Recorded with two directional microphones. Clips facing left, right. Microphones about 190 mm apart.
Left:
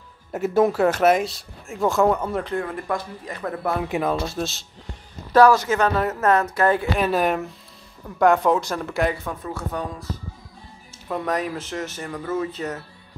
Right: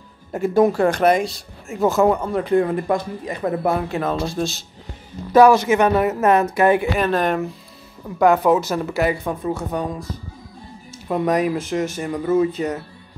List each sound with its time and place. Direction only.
0.3 s speech: 5° left (ahead or behind)
2.6 s speech: 20° right (ahead or behind)
3.9 s speech: 10° left (ahead or behind)
5.7 s speech: 15° right (ahead or behind)
7.0 s speech: 5° left (ahead or behind)
9.4 s speech: 15° right (ahead or behind)
11.1 s speech: 15° right (ahead or behind)